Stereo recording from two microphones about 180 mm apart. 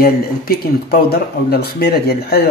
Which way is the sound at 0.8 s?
60° left (ahead or behind).